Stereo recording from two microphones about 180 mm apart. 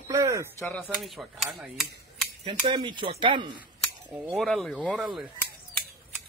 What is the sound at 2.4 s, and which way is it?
Speech, 25° right (ahead or behind).